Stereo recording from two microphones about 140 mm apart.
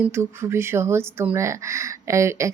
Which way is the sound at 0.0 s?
15° right (ahead or behind).